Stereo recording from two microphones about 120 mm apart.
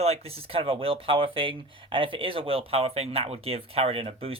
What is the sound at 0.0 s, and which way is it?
Speech, 60° right (ahead or behind).